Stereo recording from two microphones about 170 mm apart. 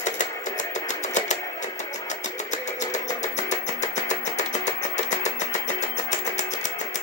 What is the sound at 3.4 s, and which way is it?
Music, 45° left (ahead or behind).